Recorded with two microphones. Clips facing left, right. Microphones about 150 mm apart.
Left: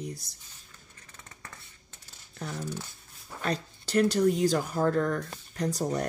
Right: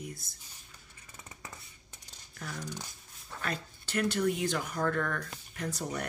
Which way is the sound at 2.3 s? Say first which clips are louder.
Left 5 dB; 30° left (ahead or behind).